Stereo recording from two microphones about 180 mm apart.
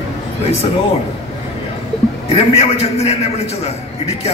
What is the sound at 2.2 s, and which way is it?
A man's voice, 35° left (ahead or behind).